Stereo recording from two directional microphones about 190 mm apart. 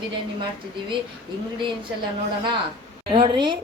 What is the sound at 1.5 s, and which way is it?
Speech, 25° right (ahead or behind).